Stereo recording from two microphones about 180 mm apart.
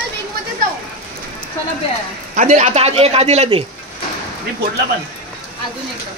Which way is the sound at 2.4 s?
45° right (ahead or behind).